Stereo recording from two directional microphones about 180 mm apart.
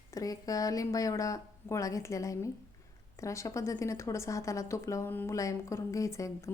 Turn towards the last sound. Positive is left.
turn(degrees=15)  # may be behind; listen again after turning